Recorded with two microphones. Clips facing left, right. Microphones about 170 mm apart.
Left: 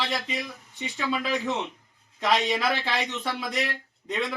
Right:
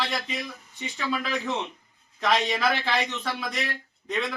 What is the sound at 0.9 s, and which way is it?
Speech, 20° left (ahead or behind).